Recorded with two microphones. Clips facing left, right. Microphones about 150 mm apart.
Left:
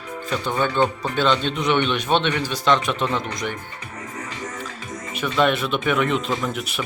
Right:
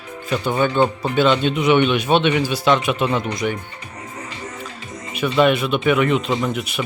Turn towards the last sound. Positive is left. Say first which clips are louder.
# right 4 dB
turn(degrees=0)  # may be behind; listen again after turning